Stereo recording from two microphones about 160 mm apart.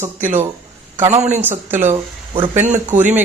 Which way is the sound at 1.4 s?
15° right (ahead or behind).